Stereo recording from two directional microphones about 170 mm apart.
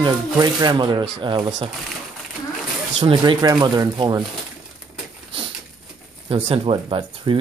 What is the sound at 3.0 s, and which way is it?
Speech, 25° right (ahead or behind).